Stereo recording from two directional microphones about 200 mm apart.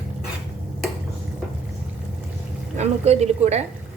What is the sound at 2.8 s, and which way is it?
Speech, 35° right (ahead or behind).